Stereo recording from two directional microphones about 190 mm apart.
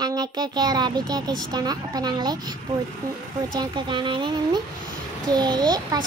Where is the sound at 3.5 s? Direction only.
25° right (ahead or behind).